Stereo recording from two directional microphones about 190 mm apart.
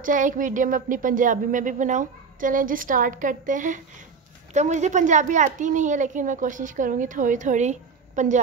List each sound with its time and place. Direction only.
0.0 s a woman's voice: 45° right (ahead or behind)